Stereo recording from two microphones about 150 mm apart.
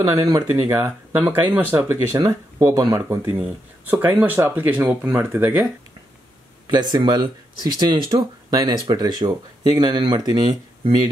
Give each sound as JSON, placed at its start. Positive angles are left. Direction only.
{"t": 0.0, "sound": "speech", "side_deg": -25}
{"t": 2.1, "sound": "speech", "side_deg": -25}
{"t": 3.2, "sound": "speech", "side_deg": -10}
{"t": 6.7, "sound": "speech", "side_deg": -30}